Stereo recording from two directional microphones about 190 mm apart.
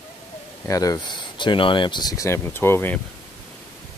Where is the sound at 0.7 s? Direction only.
20° left (ahead or behind).